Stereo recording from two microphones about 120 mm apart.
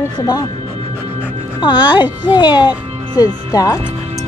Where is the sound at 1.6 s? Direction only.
40° left (ahead or behind).